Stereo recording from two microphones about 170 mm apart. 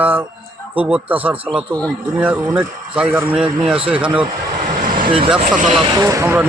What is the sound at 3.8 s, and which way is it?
Speech, 30° right (ahead or behind).